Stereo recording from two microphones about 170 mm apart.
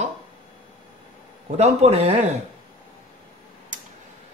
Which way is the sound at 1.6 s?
40° right (ahead or behind).